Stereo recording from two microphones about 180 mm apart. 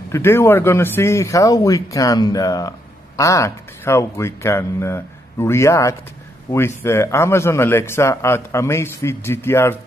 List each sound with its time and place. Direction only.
0.1 s a man's voice: 15° left (ahead or behind)